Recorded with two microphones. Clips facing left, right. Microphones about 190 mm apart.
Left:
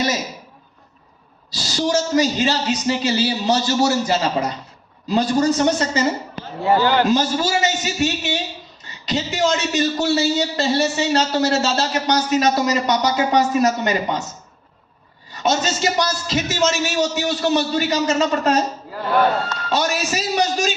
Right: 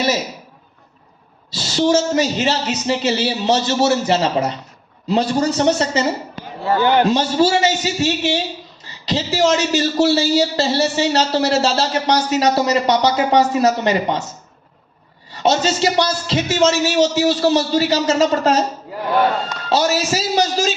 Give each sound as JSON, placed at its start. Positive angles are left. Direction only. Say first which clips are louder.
{"t": 1.5, "sound": "speech", "louder": "right 5 dB", "side_deg": -25}
{"t": 6.6, "sound": "speech", "louder": "left 1 dB", "side_deg": 15}
{"t": 7.1, "sound": "a man's voice", "louder": "right 3 dB", "side_deg": -30}
{"t": 15.3, "sound": "a man's voice", "louder": "right 3 dB", "side_deg": -30}
{"t": 19.7, "sound": "a man's voice", "louder": "right 4 dB", "side_deg": -30}